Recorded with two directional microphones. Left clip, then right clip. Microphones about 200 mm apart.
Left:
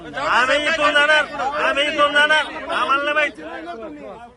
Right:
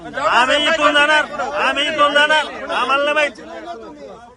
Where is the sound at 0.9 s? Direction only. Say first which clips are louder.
Right 1 dB; 10° right (ahead or behind).